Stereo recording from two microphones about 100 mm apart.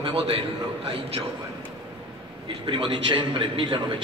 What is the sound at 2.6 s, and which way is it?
A man's voice, 55° right (ahead or behind).